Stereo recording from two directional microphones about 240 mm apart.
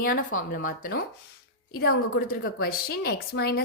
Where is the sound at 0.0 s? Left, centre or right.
Left.